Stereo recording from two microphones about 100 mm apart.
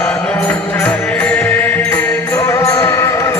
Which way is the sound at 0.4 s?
15° left (ahead or behind).